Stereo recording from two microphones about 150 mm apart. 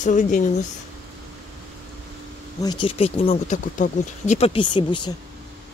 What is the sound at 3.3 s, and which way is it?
Speech, 55° left (ahead or behind).